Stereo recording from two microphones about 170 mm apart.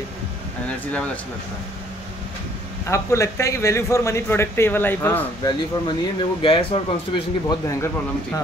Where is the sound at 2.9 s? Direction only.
15° left (ahead or behind).